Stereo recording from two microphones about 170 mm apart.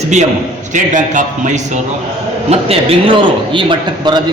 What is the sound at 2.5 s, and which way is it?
Speech, 35° right (ahead or behind).